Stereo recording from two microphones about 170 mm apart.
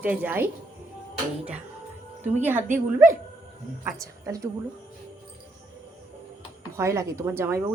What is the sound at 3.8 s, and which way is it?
Speech, 20° right (ahead or behind).